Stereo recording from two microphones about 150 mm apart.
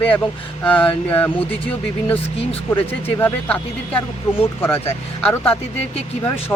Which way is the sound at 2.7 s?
15° left (ahead or behind).